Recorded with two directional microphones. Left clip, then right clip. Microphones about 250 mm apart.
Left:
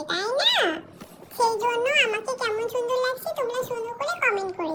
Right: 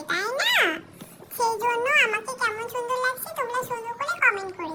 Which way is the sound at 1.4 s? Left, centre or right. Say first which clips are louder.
Left 1 dB; centre.